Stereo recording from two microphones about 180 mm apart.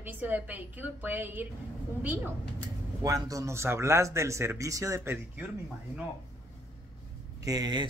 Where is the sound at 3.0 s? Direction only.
20° right (ahead or behind).